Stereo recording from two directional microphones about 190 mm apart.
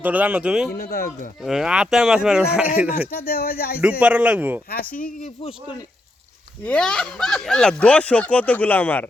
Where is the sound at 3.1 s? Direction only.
50° left (ahead or behind).